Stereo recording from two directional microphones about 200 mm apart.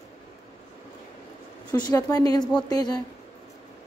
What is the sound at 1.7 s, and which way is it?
Speech, 20° left (ahead or behind).